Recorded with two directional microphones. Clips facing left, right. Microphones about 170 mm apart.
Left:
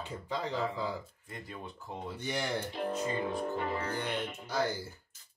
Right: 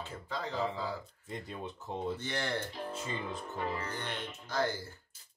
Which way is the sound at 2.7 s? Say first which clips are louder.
Left 6 dB; 60° left (ahead or behind).